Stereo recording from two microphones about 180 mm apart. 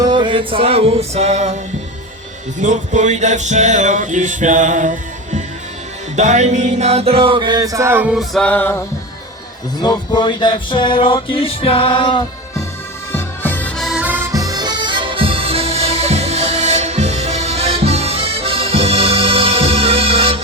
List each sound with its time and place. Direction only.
0.0 s music: 25° right (ahead or behind)
2.6 s music: 40° right (ahead or behind); by 8.8 s 10° left (ahead or behind)
9.7 s music: 25° left (ahead or behind)
13.1 s harmonica: 10° left (ahead or behind); by 20.4 s 30° right (ahead or behind)